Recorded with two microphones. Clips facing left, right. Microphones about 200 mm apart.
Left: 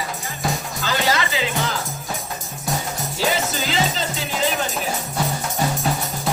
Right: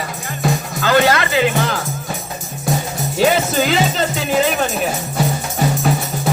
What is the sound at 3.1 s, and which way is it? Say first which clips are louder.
Music: right 8 dB; 60° right (ahead or behind).